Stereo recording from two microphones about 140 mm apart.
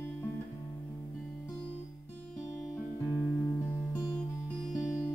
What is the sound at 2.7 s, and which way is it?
Music, 15° left (ahead or behind).